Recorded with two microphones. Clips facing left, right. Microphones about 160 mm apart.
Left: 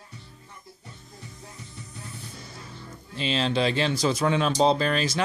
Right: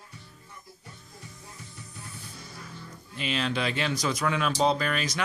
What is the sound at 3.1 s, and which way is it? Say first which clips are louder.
Speech: left 4 dB; 30° left (ahead or behind).